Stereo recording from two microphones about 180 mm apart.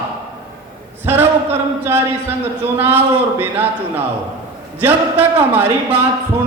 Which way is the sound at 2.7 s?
10° right (ahead or behind).